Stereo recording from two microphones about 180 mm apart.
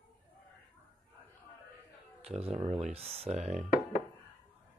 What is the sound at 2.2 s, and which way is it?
Speech, 35° right (ahead or behind).